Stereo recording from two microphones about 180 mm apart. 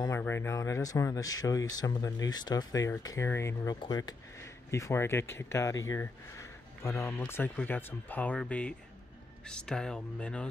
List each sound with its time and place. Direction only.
0.0 s speech: 15° left (ahead or behind)